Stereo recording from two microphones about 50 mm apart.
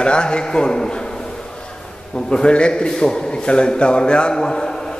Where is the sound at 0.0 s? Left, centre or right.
Centre.